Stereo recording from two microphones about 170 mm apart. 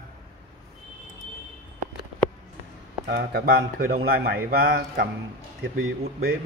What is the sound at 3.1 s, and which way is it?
A man's voice, 65° right (ahead or behind).